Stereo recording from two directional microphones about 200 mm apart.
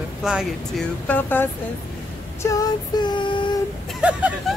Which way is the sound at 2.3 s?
15° left (ahead or behind).